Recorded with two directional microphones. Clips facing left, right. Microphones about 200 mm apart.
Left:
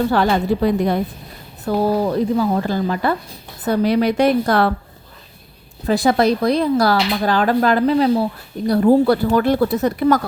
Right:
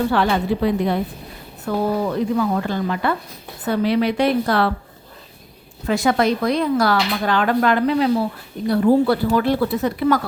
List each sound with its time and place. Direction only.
0.1 s speech: 40° left (ahead or behind)
5.8 s speech: 35° left (ahead or behind)